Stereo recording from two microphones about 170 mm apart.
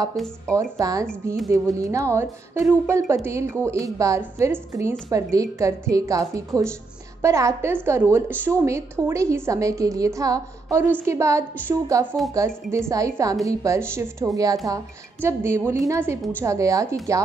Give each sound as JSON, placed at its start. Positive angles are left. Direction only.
{"t": 0.1, "sound": "speech", "side_deg": 0}
{"t": 0.6, "sound": "a woman's voice", "side_deg": -20}